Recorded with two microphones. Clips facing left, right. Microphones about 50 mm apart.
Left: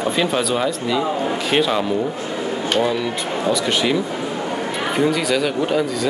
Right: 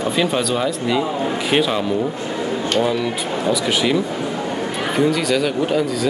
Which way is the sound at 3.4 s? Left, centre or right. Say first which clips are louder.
Even; centre.